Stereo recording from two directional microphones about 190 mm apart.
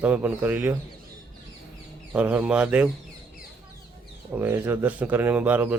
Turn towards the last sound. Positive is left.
turn(degrees=-10)  # may be behind; listen again after turning